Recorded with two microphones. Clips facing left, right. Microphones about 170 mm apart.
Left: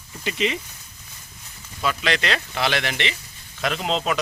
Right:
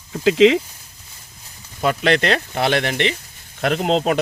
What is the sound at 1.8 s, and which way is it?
Speech, 50° right (ahead or behind).